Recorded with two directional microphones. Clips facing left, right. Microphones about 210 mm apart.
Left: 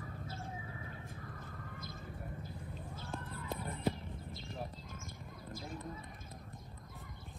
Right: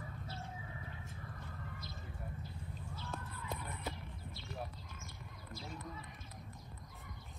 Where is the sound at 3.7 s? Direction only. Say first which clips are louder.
Left 8 dB; 50° left (ahead or behind).